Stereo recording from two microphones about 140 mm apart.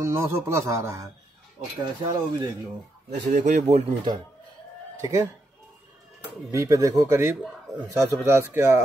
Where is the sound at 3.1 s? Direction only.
60° right (ahead or behind).